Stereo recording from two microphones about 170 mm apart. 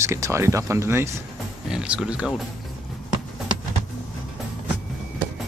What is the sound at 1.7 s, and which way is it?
Speech, 5° right (ahead or behind).